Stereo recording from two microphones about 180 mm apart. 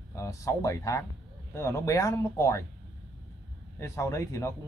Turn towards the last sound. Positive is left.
turn(degrees=15)  # may be behind; listen again after turning